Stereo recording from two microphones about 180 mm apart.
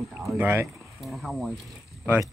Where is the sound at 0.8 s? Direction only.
Centre (ahead or behind).